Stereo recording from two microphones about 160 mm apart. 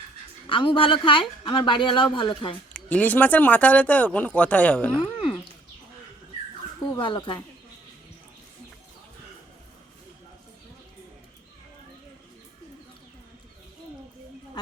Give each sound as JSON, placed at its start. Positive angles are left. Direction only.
{"t": 0.4, "sound": "speech", "side_deg": 30}
{"t": 2.7, "sound": "speech", "side_deg": 10}
{"t": 6.9, "sound": "speech", "side_deg": 30}